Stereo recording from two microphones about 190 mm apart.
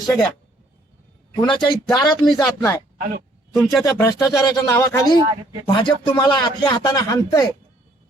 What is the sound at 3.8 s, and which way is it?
Speech, 15° left (ahead or behind).